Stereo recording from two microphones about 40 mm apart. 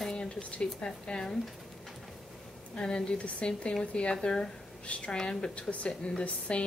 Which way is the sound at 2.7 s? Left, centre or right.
Centre.